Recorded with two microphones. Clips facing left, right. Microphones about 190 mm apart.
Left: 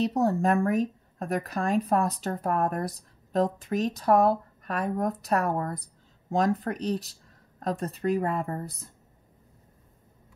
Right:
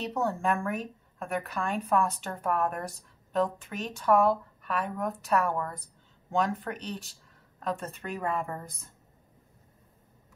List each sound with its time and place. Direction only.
0.0 s speech: 35° left (ahead or behind)